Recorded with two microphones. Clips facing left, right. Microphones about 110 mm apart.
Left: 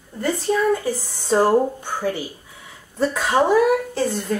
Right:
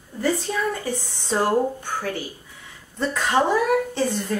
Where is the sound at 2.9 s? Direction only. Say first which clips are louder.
Left 2 dB; 10° left (ahead or behind).